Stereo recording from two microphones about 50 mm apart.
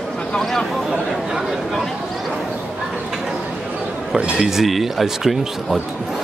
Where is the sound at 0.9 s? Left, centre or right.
Centre.